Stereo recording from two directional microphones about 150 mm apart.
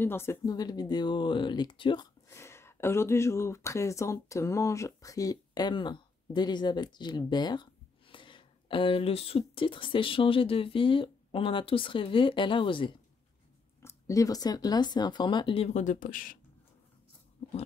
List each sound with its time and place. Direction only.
0.0 s speech: 15° left (ahead or behind); by 2.0 s 30° left (ahead or behind)
2.2 s speech: 15° left (ahead or behind); by 12.9 s 35° left (ahead or behind)
13.8 s speech: 20° left (ahead or behind); by 16.3 s 65° left (ahead or behind)